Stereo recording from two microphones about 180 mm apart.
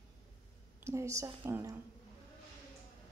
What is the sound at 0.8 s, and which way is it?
Speech, 15° right (ahead or behind).